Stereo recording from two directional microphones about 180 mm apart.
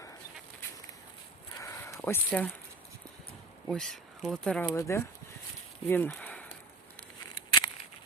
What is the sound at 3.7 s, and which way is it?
Speech, 5° left (ahead or behind).